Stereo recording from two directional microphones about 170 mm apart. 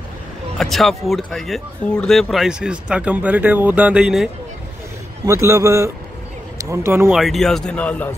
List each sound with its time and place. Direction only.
0.6 s speech: centre (ahead or behind)
5.2 s a man's voice: 15° right (ahead or behind)
7.1 s speech: centre (ahead or behind)